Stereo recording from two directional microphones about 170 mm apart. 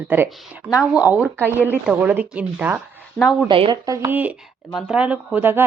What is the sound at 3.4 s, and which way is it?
Speech, 30° right (ahead or behind).